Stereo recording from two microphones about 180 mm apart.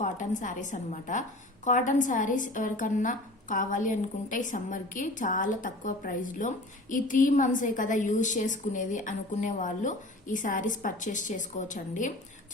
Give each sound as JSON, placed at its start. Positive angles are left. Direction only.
{"t": 0.0, "sound": "a woman's voice", "side_deg": 45}